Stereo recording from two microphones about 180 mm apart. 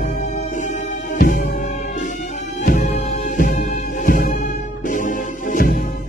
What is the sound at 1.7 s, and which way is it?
Music, 40° left (ahead or behind).